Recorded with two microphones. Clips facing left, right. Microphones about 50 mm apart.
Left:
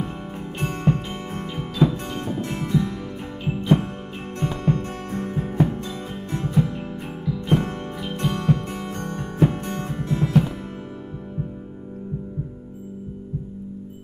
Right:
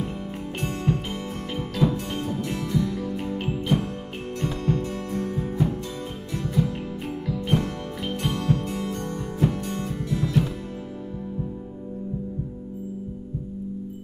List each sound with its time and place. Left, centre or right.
0.6 s music: left